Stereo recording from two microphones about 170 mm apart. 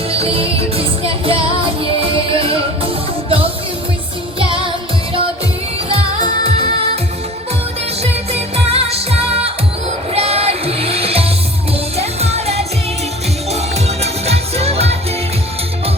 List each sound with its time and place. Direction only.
0.1 s music: 35° right (ahead or behind)
8.0 s music: 40° right (ahead or behind)